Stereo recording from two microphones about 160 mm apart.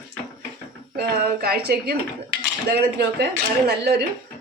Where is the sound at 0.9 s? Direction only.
75° right (ahead or behind).